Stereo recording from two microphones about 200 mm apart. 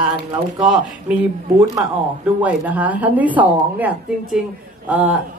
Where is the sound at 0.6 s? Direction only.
5° right (ahead or behind).